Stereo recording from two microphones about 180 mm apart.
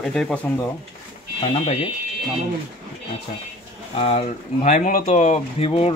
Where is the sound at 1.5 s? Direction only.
30° left (ahead or behind).